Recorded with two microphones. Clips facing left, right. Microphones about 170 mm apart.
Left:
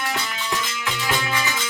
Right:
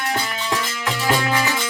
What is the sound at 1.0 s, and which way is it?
Music, 35° right (ahead or behind).